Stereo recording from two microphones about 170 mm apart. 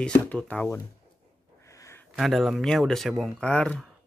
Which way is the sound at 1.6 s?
15° left (ahead or behind).